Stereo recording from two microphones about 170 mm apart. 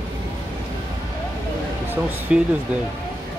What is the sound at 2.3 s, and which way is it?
Speech, 5° right (ahead or behind).